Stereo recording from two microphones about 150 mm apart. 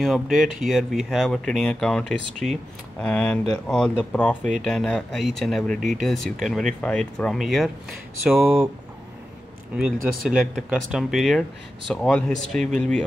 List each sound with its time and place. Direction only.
0.0 s speech: centre (ahead or behind)
9.8 s speech: 5° right (ahead or behind)